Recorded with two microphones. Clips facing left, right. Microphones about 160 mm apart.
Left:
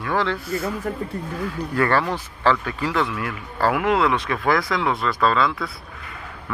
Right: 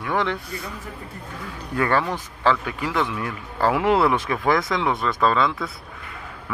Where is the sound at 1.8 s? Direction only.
15° right (ahead or behind).